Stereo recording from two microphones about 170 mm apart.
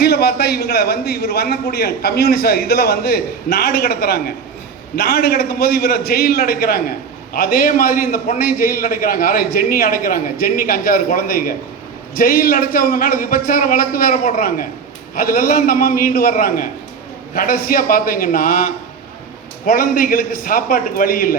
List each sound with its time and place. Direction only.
0.0 s a man's voice: 65° left (ahead or behind)